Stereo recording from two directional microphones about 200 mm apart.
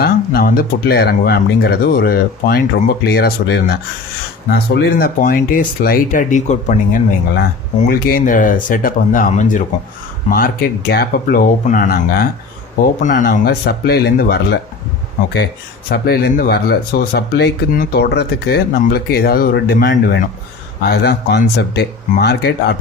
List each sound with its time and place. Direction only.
0.0 s speech: 50° left (ahead or behind)
15.9 s speech: 50° left (ahead or behind)